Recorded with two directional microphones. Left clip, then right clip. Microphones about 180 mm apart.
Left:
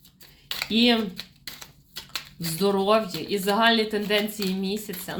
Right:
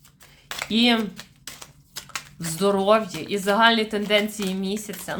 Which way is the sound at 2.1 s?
15° right (ahead or behind).